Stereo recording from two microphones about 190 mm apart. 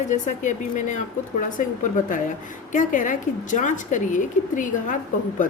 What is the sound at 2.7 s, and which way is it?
A woman's voice, 45° left (ahead or behind).